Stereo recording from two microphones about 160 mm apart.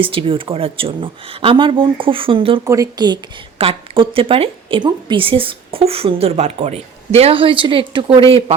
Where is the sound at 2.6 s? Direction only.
20° right (ahead or behind).